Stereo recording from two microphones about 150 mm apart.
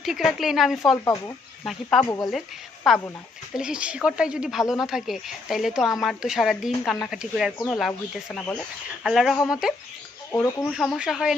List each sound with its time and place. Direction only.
0.0 s speech: centre (ahead or behind)
1.0 s speech: 20° left (ahead or behind)
1.6 s speech: 5° left (ahead or behind)
2.0 s speech: 25° left (ahead or behind)
2.3 s speech: centre (ahead or behind)
8.3 s speech: 10° left (ahead or behind)
9.0 s speech: centre (ahead or behind)